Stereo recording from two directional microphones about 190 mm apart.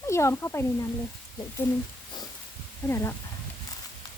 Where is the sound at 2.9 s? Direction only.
15° left (ahead or behind).